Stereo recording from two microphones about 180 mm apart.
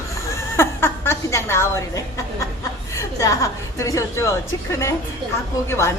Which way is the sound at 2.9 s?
20° left (ahead or behind).